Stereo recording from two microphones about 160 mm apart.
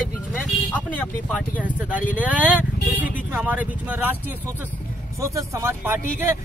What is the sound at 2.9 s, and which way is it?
Speech, 10° right (ahead or behind).